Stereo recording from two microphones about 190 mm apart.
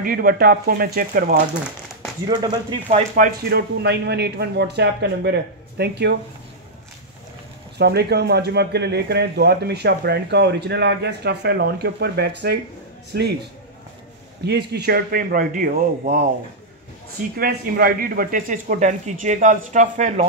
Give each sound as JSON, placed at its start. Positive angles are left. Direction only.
{"t": 0.0, "sound": "a man's voice", "side_deg": -50}
{"t": 2.2, "sound": "speech", "side_deg": -20}
{"t": 3.3, "sound": "a man's voice", "side_deg": -55}
{"t": 7.7, "sound": "a man's voice", "side_deg": -60}
{"t": 14.4, "sound": "a man's voice", "side_deg": -60}
{"t": 17.4, "sound": "speech", "side_deg": -50}